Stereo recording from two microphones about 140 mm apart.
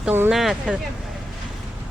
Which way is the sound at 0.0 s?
15° right (ahead or behind).